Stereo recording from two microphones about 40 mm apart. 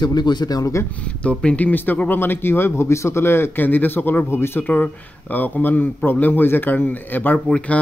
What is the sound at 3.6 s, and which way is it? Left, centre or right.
Speech, left.